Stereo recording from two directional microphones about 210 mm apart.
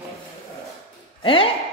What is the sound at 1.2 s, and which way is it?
Speech, 25° left (ahead or behind).